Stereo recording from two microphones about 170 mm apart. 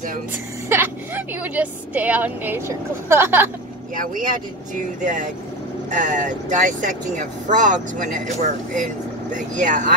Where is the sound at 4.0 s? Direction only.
50° right (ahead or behind).